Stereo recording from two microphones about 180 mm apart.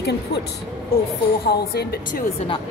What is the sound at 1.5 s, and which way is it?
Speech, 60° left (ahead or behind).